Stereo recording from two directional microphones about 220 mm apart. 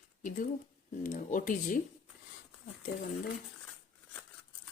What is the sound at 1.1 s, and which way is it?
Speech, 35° left (ahead or behind).